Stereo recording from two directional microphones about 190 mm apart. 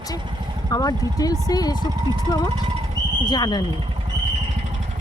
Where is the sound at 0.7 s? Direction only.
20° left (ahead or behind).